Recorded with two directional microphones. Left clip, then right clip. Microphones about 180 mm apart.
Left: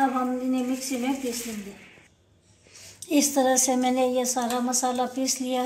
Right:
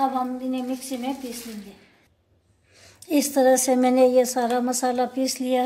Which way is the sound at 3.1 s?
45° right (ahead or behind).